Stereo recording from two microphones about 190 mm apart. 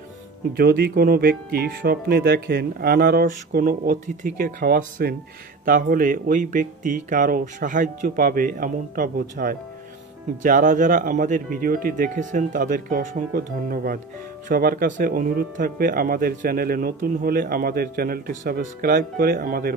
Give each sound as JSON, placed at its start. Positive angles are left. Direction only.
{"t": 0.6, "sound": "speech", "side_deg": -55}